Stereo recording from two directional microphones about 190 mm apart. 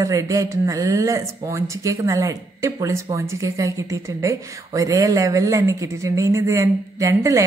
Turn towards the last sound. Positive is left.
turn(degrees=-15)  # may be behind; listen again after turning